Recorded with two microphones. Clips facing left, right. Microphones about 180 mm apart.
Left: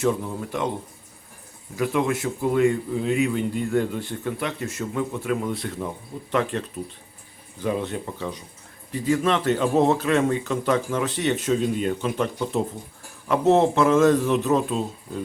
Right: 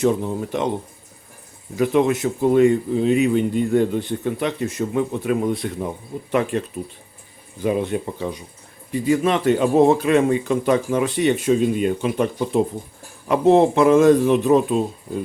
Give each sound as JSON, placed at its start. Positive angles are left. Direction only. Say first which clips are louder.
{"t": 0.0, "sound": "speech", "louder": "right 4 dB", "side_deg": -20}
{"t": 1.7, "sound": "speech", "louder": "right 5 dB", "side_deg": -25}